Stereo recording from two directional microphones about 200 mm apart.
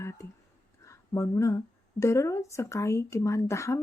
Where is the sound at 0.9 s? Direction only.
15° left (ahead or behind).